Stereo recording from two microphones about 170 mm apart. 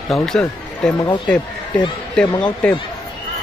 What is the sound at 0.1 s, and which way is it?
Speech, centre (ahead or behind).